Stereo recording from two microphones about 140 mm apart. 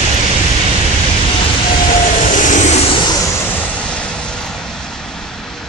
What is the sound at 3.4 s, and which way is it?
Vehicle, 10° left (ahead or behind).